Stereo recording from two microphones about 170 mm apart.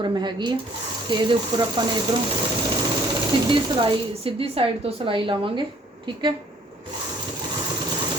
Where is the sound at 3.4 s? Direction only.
30° right (ahead or behind).